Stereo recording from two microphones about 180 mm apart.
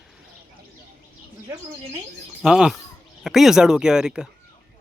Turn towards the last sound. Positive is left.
turn(degrees=-5)  # may be behind; listen again after turning